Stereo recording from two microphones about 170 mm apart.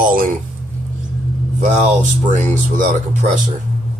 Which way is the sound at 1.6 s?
45° right (ahead or behind).